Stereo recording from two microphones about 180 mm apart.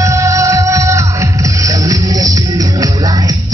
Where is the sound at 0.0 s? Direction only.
15° right (ahead or behind).